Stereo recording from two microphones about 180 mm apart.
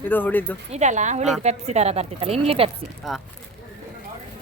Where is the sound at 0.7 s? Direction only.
40° right (ahead or behind).